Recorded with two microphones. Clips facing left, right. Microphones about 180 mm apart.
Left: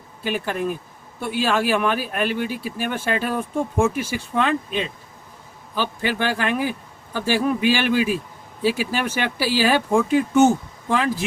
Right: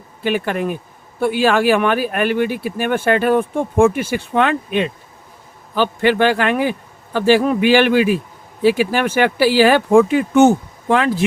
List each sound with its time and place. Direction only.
0.2 s speech: 65° right (ahead or behind)